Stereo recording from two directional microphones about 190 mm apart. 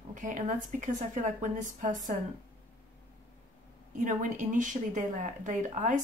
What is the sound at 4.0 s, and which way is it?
A woman's voice, 40° right (ahead or behind).